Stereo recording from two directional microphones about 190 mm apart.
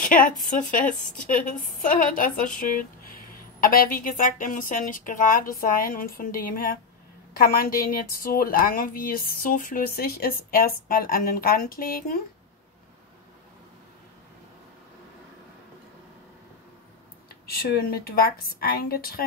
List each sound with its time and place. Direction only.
0.0 s a woman's voice: 45° left (ahead or behind)
17.3 s a woman's voice: 55° left (ahead or behind)